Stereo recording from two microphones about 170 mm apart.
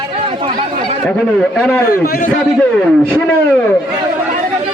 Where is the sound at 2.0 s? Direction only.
60° left (ahead or behind).